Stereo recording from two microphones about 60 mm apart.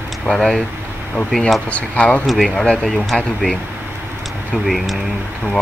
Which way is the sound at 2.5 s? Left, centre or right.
Centre.